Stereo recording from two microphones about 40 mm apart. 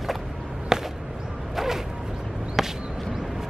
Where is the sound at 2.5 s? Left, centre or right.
Centre.